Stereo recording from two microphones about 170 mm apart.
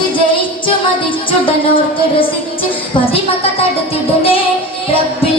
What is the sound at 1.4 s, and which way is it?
Music, 30° left (ahead or behind).